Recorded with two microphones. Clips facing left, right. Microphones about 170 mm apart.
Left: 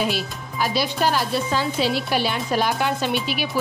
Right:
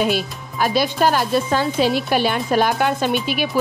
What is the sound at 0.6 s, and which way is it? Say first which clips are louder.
A woman's voice: right 4 dB; 50° right (ahead or behind).